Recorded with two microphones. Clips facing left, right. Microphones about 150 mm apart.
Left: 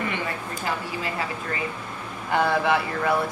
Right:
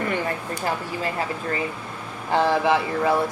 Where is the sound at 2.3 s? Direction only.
25° right (ahead or behind).